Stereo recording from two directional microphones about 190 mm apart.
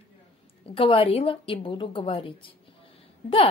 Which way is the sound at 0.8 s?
30° left (ahead or behind).